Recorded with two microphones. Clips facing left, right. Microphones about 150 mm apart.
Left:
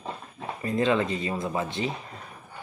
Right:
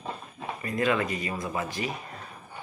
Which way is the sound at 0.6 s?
25° left (ahead or behind).